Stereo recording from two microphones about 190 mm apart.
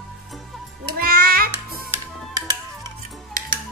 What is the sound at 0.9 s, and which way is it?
Music, 50° right (ahead or behind).